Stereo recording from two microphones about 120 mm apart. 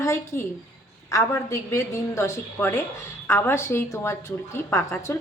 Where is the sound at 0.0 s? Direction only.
20° left (ahead or behind).